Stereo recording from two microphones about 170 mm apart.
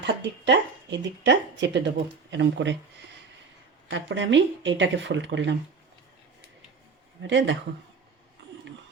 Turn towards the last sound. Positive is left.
turn(degrees=-90)